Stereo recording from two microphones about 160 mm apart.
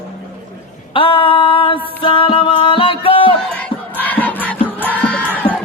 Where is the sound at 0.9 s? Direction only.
35° left (ahead or behind).